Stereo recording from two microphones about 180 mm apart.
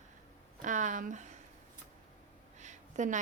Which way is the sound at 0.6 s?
45° right (ahead or behind).